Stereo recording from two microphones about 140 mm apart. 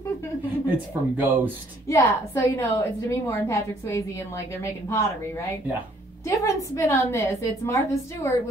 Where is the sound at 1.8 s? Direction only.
20° left (ahead or behind).